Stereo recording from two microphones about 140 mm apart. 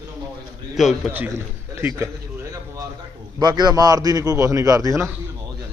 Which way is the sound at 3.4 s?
30° right (ahead or behind).